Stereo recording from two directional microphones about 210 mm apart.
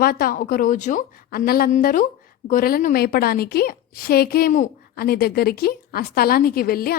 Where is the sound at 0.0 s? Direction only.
45° left (ahead or behind).